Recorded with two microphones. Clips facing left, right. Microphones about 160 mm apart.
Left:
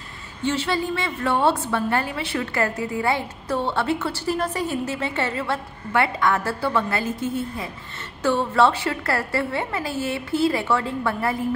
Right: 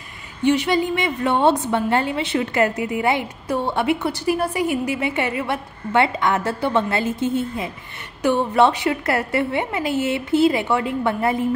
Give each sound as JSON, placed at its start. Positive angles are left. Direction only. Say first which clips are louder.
{"t": 0.4, "sound": "a woman's voice", "louder": "right 6 dB", "side_deg": -15}